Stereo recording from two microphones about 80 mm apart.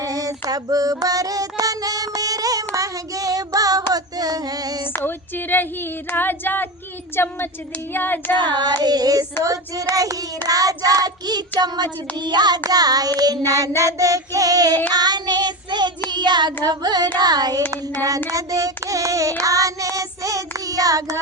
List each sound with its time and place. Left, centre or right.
0.0 s child singing: right
4.9 s female singing: left
7.2 s child singing: left
8.4 s child singing: right
17.7 s child singing: right